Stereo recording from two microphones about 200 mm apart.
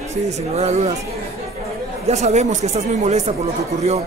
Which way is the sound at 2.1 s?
35° right (ahead or behind).